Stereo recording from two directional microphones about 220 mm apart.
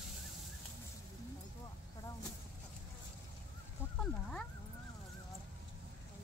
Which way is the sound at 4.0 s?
5° left (ahead or behind).